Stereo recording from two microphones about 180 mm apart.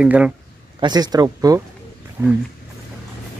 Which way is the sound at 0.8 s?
20° right (ahead or behind).